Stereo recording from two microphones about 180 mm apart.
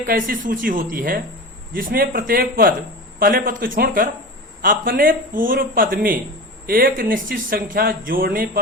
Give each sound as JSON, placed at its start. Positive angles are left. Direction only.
{"t": 0.1, "sound": "speech", "side_deg": -50}